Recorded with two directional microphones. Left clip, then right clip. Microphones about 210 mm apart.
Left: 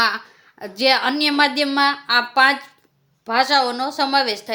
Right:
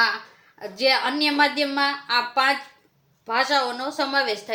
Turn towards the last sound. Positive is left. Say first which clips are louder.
# left 4 dB
turn(degrees=45)  # may be behind; listen again after turning